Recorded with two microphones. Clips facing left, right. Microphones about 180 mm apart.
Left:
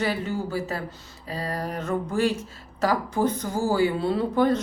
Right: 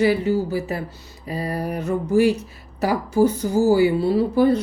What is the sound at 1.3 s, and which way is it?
Speech, 15° right (ahead or behind).